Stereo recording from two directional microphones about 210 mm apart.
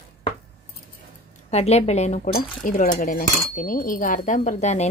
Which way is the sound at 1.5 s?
30° left (ahead or behind).